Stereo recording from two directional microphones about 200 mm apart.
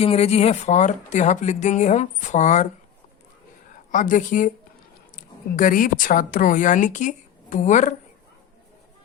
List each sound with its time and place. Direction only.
0.0 s speech: 30° left (ahead or behind)
3.9 s a woman's voice: 40° left (ahead or behind)